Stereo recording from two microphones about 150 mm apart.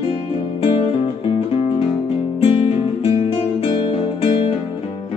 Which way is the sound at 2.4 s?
40° left (ahead or behind).